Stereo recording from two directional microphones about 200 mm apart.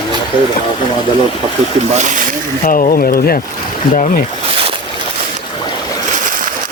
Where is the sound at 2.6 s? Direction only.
40° left (ahead or behind).